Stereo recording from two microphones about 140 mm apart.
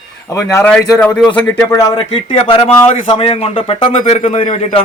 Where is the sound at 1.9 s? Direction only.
35° left (ahead or behind).